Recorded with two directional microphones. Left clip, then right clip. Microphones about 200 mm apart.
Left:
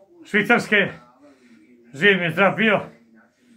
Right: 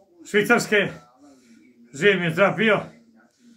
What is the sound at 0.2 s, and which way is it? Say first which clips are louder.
Speech: left 1 dB; 45° left (ahead or behind).